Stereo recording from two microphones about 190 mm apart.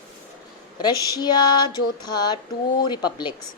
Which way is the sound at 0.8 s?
20° left (ahead or behind).